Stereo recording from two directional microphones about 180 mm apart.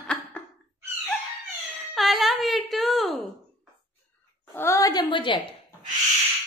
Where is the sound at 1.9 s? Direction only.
Centre (ahead or behind).